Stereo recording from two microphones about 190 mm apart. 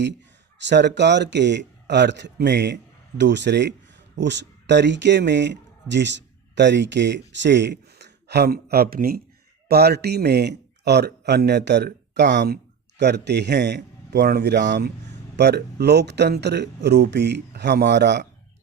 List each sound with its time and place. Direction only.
0.6 s a man's voice: 65° right (ahead or behind)